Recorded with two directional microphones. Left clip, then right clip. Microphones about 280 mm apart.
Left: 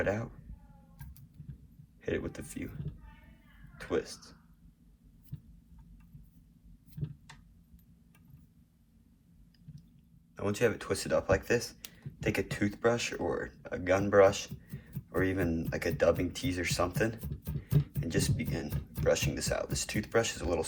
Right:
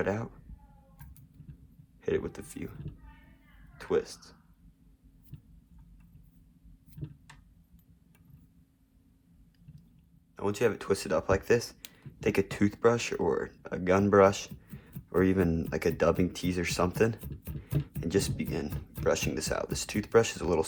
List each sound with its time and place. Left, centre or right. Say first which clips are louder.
0.0 s speech: right 1 dB; right
2.0 s speech: right 4 dB; right
3.8 s speech: right 4 dB; right
10.3 s speech: right 1 dB; centre